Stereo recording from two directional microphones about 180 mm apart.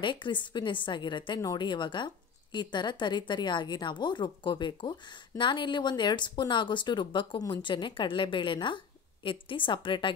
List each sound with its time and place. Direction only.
0.0 s a woman's voice: 25° left (ahead or behind)